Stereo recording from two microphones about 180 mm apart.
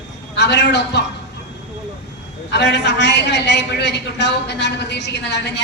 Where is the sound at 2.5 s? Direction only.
75° left (ahead or behind).